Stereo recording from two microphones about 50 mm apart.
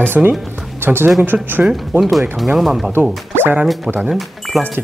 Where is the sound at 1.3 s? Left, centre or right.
Centre.